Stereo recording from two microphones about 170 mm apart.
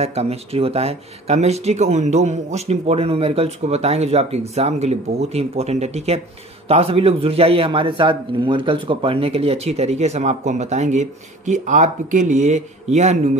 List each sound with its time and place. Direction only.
0.0 s a man's voice: 40° right (ahead or behind)